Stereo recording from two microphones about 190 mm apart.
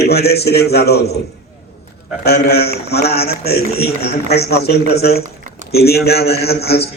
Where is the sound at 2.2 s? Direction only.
55° left (ahead or behind).